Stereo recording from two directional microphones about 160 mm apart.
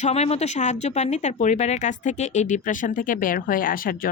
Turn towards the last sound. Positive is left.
turn(degrees=65)  # may be behind; listen again after turning